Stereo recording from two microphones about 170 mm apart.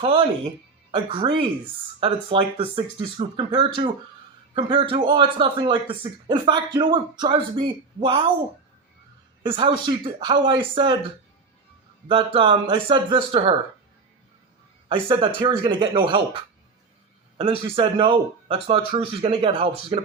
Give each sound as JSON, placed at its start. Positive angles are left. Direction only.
{"t": 0.0, "sound": "speech", "side_deg": -35}
{"t": 9.4, "sound": "speech", "side_deg": -30}
{"t": 12.0, "sound": "speech", "side_deg": -30}
{"t": 14.8, "sound": "speech", "side_deg": -30}